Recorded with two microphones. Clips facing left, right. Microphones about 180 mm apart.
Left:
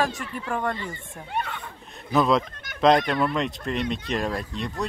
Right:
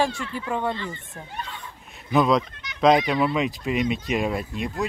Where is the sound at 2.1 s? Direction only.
Centre (ahead or behind).